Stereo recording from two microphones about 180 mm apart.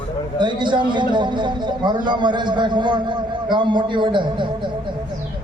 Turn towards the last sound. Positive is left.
turn(degrees=-25)  # may be behind; listen again after turning